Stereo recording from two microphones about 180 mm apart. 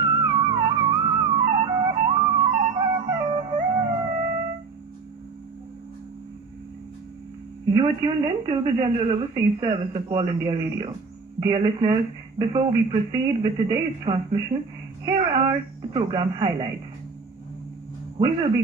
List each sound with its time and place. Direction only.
0.3 s music: 25° right (ahead or behind)
7.7 s speech: 30° right (ahead or behind)